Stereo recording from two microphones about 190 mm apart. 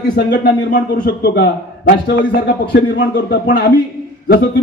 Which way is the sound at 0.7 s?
45° left (ahead or behind).